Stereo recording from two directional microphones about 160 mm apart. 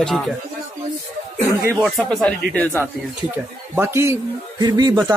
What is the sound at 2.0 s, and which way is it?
Speech, 5° left (ahead or behind).